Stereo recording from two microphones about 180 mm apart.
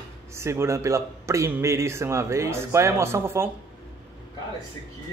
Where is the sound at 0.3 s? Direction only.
15° right (ahead or behind).